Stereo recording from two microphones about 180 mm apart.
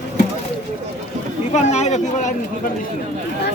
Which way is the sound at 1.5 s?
40° left (ahead or behind).